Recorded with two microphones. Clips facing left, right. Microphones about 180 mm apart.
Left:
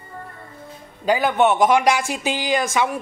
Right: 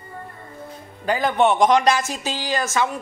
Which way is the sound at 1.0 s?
10° left (ahead or behind).